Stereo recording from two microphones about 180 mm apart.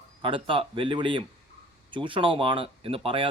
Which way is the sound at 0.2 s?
30° right (ahead or behind).